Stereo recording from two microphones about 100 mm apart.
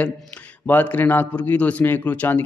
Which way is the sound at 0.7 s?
20° left (ahead or behind).